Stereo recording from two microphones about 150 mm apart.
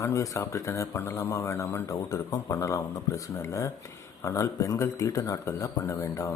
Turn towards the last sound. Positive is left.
turn(degrees=20)  # may be behind; listen again after turning